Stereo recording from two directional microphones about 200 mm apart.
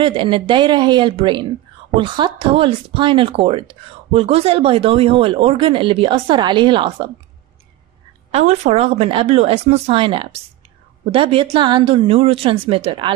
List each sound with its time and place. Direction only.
0.0 s speech: 25° right (ahead or behind)
8.3 s speech: 30° right (ahead or behind)